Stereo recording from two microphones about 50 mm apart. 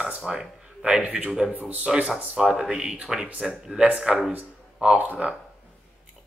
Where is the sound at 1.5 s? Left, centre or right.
Right.